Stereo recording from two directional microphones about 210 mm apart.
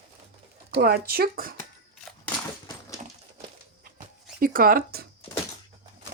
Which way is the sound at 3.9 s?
40° right (ahead or behind).